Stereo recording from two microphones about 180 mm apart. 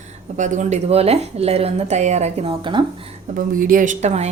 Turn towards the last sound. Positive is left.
turn(degrees=-40)  # may be behind; listen again after turning